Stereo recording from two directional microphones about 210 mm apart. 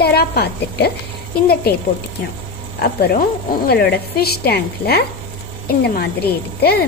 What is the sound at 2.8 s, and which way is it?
A woman's voice, 50° left (ahead or behind).